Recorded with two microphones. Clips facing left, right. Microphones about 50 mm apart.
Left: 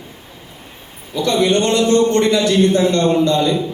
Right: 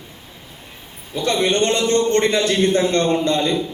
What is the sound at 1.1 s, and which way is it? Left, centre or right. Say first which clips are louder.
A man's voice: left 3 dB; right.